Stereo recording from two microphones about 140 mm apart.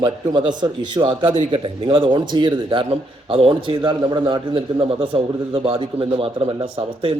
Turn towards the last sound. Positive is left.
turn(degrees=-40)  # may be behind; listen again after turning